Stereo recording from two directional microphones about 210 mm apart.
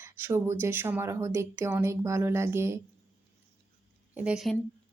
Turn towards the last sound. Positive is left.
turn(degrees=-5)  # may be behind; listen again after turning